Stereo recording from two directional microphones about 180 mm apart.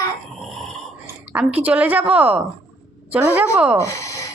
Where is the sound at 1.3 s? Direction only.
10° right (ahead or behind).